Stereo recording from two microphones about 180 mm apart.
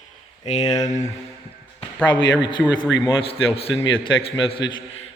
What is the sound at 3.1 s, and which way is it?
A man's voice, 30° left (ahead or behind).